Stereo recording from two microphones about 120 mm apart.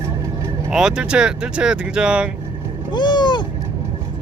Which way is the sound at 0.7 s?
5° right (ahead or behind).